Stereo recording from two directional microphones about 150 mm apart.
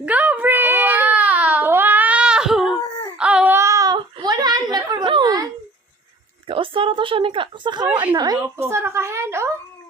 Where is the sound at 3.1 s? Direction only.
5° right (ahead or behind); by 5.4 s 25° right (ahead or behind).